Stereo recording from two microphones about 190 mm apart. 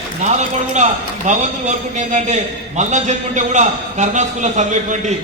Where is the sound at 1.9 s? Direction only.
40° right (ahead or behind).